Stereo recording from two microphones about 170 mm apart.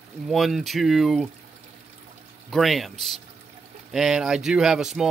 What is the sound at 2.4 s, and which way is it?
Speech, centre (ahead or behind).